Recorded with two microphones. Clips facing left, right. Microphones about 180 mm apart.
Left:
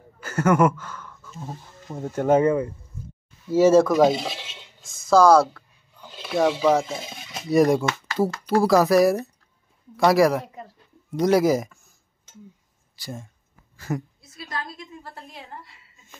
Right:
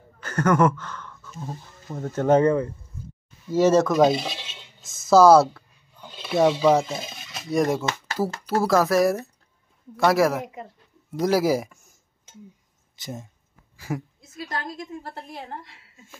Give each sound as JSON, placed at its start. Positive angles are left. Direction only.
{"t": 0.2, "sound": "a sound", "side_deg": 5}
{"t": 2.0, "sound": "speech", "side_deg": 15}
{"t": 4.1, "sound": "a sound", "side_deg": 5}
{"t": 4.8, "sound": "speech", "side_deg": -5}
{"t": 6.0, "sound": "a sound", "side_deg": 5}
{"t": 6.5, "sound": "speech", "side_deg": 0}
{"t": 6.9, "sound": "a sound", "side_deg": 15}
{"t": 7.4, "sound": "speech", "side_deg": 0}
{"t": 10.4, "sound": "speech", "side_deg": -15}
{"t": 11.1, "sound": "speech", "side_deg": -5}
{"t": 12.9, "sound": "speech", "side_deg": -20}
{"t": 13.7, "sound": "speech", "side_deg": -10}
{"t": 14.3, "sound": "a woman's voice", "side_deg": -45}